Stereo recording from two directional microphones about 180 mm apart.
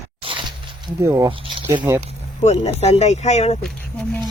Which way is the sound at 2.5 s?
35° left (ahead or behind).